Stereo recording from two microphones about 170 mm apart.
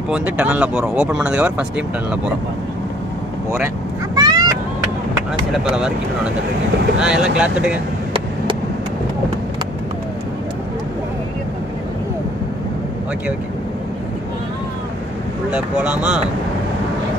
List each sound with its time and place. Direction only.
0.1 s speech: 5° right (ahead or behind)
4.1 s vehicle: 25° right (ahead or behind)
5.5 s speech: 5° right (ahead or behind)
7.0 s speech: 5° right (ahead or behind)
15.5 s speech: 5° right (ahead or behind)